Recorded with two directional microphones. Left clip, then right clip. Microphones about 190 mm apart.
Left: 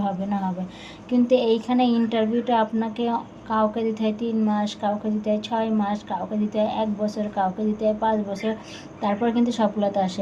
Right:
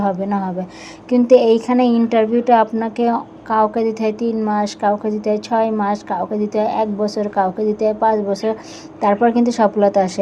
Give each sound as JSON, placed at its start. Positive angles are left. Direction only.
{"t": 0.0, "sound": "speech", "side_deg": -40}
{"t": 1.6, "sound": "a woman's voice", "side_deg": -40}